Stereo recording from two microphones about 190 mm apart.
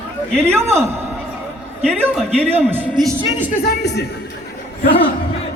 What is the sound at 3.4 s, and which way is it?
Speech, 45° left (ahead or behind).